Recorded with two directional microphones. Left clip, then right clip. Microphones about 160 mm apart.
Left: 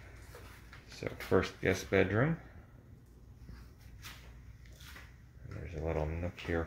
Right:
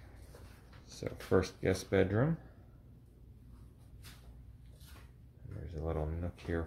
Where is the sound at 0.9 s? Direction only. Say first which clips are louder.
Left 1 dB; 10° right (ahead or behind).